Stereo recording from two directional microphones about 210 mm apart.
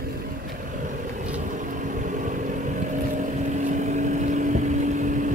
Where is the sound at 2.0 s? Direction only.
35° right (ahead or behind).